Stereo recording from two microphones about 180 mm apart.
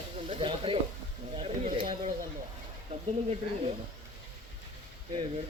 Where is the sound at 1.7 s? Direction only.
30° right (ahead or behind).